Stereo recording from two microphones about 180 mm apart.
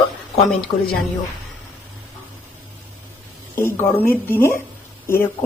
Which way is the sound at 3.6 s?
15° left (ahead or behind).